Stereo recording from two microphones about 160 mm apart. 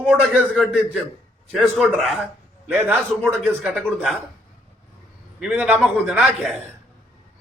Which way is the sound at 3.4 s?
5° right (ahead or behind).